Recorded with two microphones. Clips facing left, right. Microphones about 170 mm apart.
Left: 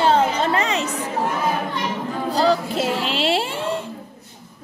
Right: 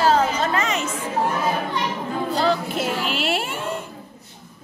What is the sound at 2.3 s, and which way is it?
Speech, 35° left (ahead or behind).